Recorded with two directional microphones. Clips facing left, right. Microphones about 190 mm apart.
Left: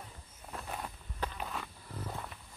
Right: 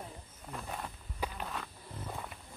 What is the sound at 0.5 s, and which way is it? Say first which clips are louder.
Wild animals: even; centre (ahead or behind).